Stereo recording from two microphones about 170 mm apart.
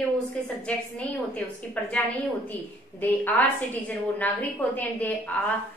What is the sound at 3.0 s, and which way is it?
A woman's voice, 10° left (ahead or behind).